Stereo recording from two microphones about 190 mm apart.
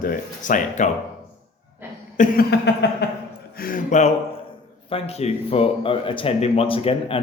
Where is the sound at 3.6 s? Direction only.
45° left (ahead or behind).